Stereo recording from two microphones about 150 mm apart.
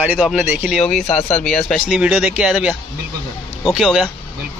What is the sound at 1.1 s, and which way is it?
Speech, 45° left (ahead or behind).